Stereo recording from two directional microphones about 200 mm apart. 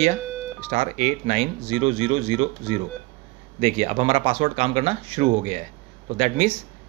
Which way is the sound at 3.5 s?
30° right (ahead or behind).